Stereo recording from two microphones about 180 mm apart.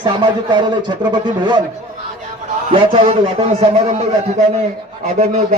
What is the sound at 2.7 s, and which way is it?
A man's voice, 30° right (ahead or behind).